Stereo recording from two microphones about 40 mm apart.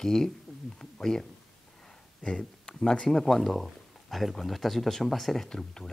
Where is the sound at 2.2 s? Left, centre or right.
Centre.